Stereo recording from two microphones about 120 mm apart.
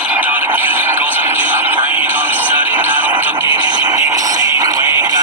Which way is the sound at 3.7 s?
35° right (ahead or behind).